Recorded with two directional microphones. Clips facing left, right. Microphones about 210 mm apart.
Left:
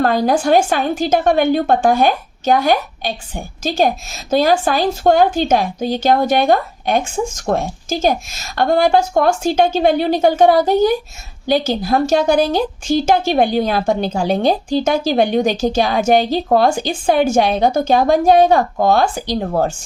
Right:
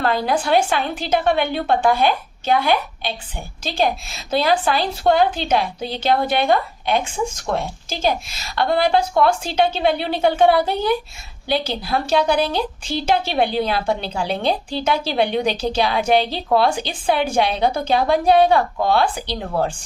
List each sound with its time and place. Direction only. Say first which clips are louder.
0.0 s a woman's voice: left 5 dB; 45° left (ahead or behind)